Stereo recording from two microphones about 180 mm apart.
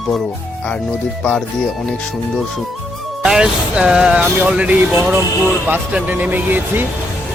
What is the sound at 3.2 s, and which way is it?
Speech, 5° right (ahead or behind).